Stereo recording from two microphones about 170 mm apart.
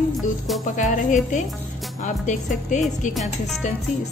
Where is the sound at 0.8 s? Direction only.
50° left (ahead or behind).